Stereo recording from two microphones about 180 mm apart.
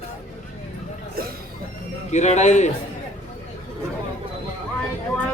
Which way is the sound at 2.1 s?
40° left (ahead or behind).